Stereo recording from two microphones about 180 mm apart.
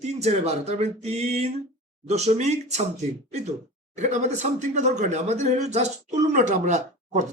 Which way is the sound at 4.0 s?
40° right (ahead or behind).